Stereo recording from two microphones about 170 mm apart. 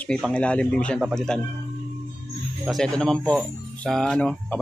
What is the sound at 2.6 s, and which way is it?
Speech, 5° left (ahead or behind).